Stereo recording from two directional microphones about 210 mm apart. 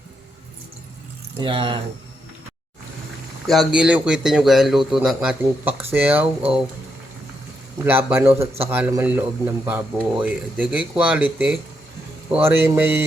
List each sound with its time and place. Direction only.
1.4 s speech: 25° right (ahead or behind)
3.4 s a man's voice: centre (ahead or behind)
7.9 s speech: 10° right (ahead or behind)